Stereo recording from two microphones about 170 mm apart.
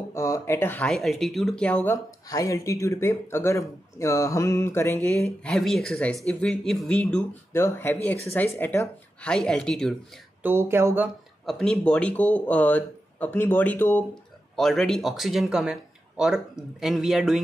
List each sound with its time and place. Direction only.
0.1 s speech: 15° left (ahead or behind)
2.2 s speech: 20° left (ahead or behind)
5.2 s speech: 5° left (ahead or behind)
10.4 s speech: 15° right (ahead or behind)
11.4 s speech: 5° left (ahead or behind)